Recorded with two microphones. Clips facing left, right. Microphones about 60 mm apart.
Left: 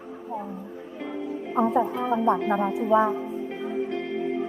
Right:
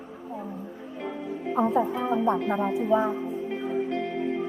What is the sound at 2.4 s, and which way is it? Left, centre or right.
Speech, left.